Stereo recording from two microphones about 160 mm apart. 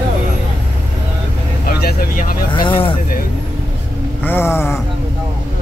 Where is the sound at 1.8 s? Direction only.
65° left (ahead or behind).